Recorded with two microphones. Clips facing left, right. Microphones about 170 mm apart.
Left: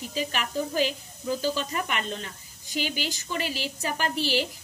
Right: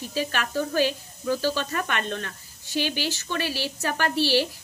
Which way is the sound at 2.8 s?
75° right (ahead or behind).